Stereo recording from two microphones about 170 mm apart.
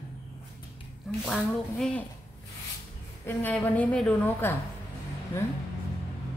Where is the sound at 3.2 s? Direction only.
10° left (ahead or behind).